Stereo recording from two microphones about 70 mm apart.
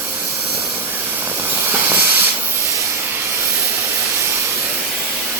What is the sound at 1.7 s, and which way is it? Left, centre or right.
Hiss, right.